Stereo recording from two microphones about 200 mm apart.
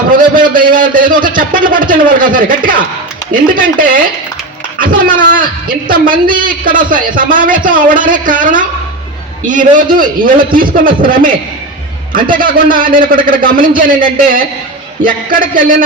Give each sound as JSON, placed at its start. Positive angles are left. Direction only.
{"t": 0.1, "sound": "a man's voice", "side_deg": -45}
{"t": 9.9, "sound": "a man's voice", "side_deg": -45}
{"t": 12.3, "sound": "a man's voice", "side_deg": -45}